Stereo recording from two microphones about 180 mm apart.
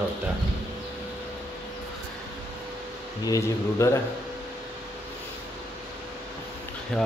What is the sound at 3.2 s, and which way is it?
Speech, 20° left (ahead or behind).